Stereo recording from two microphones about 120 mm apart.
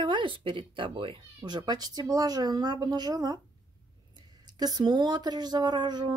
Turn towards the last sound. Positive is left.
turn(degrees=-35)  # may be behind; listen again after turning